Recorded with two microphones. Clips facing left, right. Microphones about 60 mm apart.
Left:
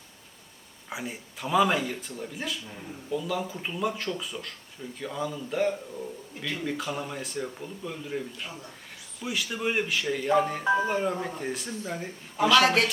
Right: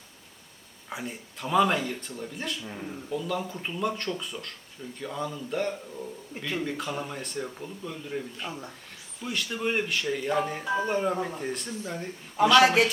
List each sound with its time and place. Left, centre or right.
0.9 s speech: centre